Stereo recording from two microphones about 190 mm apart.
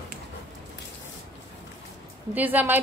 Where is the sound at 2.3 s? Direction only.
10° right (ahead or behind).